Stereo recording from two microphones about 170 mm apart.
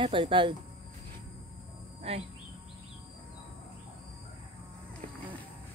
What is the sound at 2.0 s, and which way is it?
Speech, 35° right (ahead or behind).